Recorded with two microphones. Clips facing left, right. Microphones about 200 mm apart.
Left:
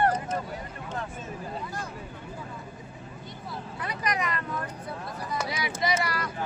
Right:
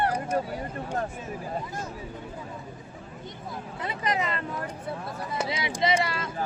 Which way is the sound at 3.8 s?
25° right (ahead or behind).